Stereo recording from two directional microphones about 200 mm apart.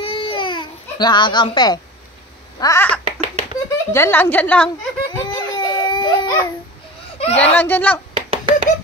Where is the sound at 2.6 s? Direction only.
15° left (ahead or behind).